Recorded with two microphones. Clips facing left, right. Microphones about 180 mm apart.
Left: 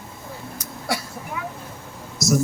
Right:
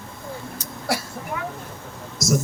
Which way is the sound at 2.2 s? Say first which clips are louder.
Left 1 dB; centre (ahead or behind).